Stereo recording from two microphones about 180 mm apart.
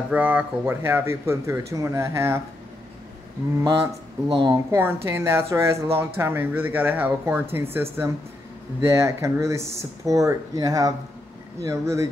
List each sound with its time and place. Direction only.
0.1 s speech: 10° right (ahead or behind)
3.6 s speech: 25° right (ahead or behind)